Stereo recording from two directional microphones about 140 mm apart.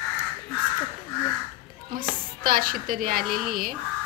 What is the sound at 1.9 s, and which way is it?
A woman's voice, 90° right.